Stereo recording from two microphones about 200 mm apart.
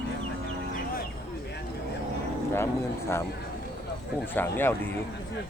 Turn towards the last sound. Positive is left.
turn(degrees=10)  # may be behind; listen again after turning